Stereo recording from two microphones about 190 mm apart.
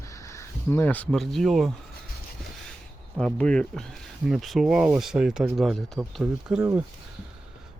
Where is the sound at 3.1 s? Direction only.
5° left (ahead or behind).